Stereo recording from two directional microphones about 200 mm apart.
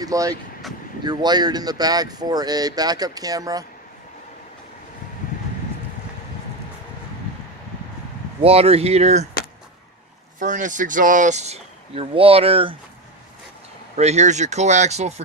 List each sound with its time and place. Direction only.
0.0 s speech: 15° right (ahead or behind)
8.4 s speech: 30° right (ahead or behind)
10.4 s speech: 40° right (ahead or behind)
13.9 s speech: 35° right (ahead or behind)